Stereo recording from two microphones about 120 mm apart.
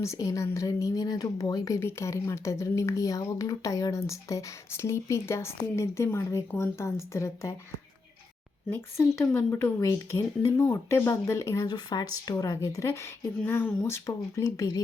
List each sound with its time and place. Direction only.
0.0 s speech: 25° left (ahead or behind)
8.7 s speech: 20° left (ahead or behind)